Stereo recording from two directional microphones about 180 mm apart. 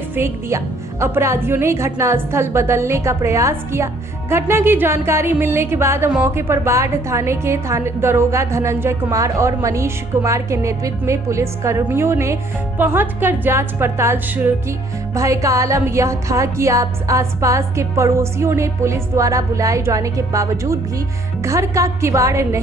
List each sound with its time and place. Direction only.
0.1 s a woman's voice: 15° right (ahead or behind)